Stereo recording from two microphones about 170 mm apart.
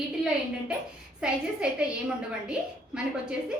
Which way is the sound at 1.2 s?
5° right (ahead or behind).